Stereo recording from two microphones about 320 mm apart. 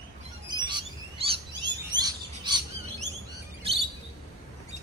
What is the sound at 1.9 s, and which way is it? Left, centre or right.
Bird, centre.